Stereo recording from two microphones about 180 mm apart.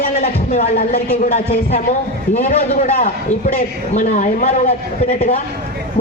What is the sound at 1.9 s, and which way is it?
A man's voice, 40° left (ahead or behind).